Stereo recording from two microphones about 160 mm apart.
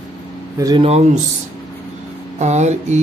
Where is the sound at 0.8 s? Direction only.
45° right (ahead or behind).